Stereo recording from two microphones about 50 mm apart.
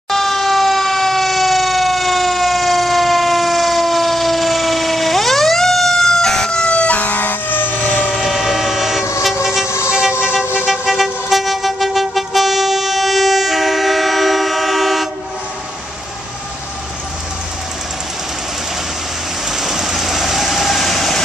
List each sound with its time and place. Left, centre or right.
0.1 s fire engine: centre; by 7.6 s left
7.8 s train: left
8.1 s vehicle: centre
9.8 s vehicle: centre
10.7 s vehicle: centre
19.5 s vehicle: centre